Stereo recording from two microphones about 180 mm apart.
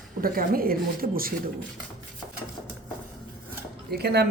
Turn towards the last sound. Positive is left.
turn(degrees=-60)  # may be behind; listen again after turning